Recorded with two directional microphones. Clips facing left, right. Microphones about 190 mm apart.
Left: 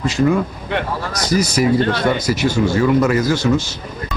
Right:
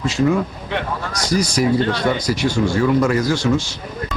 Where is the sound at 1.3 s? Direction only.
5° left (ahead or behind).